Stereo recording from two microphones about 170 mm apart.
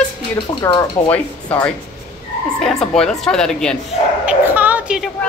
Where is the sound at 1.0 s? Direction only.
10° left (ahead or behind).